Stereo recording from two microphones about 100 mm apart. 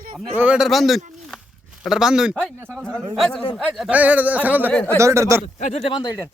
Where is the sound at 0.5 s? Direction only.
Centre (ahead or behind).